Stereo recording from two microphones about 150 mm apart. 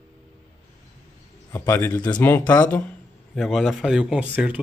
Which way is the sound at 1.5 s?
15° left (ahead or behind).